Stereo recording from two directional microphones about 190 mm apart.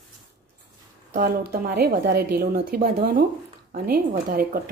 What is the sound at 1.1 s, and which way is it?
Speech, 50° right (ahead or behind).